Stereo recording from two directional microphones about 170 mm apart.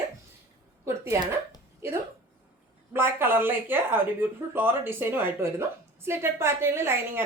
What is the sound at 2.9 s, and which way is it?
A woman's voice, 15° right (ahead or behind).